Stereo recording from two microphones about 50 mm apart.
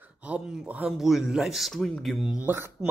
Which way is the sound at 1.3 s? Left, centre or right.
Centre.